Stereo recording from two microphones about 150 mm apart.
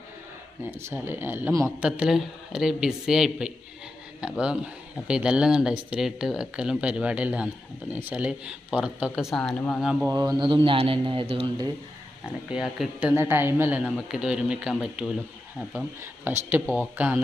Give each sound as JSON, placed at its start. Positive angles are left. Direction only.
{"t": 0.7, "sound": "speech", "side_deg": -15}
{"t": 1.8, "sound": "speech", "side_deg": -5}
{"t": 9.8, "sound": "speech", "side_deg": -5}
{"t": 10.1, "sound": "a man's voice", "side_deg": -25}
{"t": 12.5, "sound": "speech", "side_deg": -5}
{"t": 16.2, "sound": "speech", "side_deg": -15}